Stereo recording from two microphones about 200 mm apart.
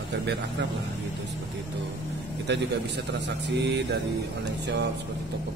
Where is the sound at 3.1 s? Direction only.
60° right (ahead or behind).